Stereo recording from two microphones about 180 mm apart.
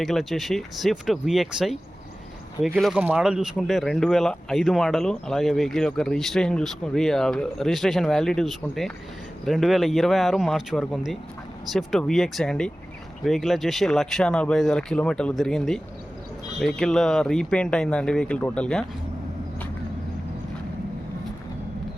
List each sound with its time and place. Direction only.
0.0 s speech: centre (ahead or behind)